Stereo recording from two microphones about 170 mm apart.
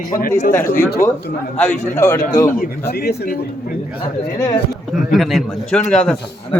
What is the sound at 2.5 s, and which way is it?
Speech, 55° left (ahead or behind).